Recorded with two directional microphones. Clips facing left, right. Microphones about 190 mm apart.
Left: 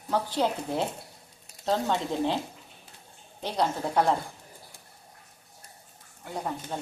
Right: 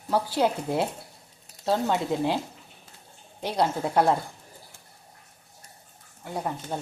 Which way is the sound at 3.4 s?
10° right (ahead or behind).